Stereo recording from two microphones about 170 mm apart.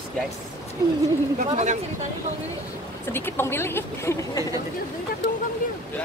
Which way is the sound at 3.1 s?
15° left (ahead or behind).